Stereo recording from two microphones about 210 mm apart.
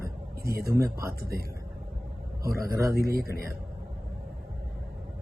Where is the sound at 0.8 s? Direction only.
15° right (ahead or behind).